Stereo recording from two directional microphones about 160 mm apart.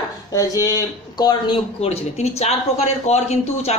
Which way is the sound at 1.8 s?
40° left (ahead or behind).